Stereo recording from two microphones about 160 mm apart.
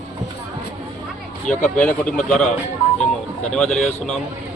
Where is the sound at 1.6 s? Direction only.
10° left (ahead or behind).